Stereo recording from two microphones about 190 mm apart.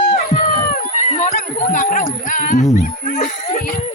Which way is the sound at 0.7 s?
35° left (ahead or behind).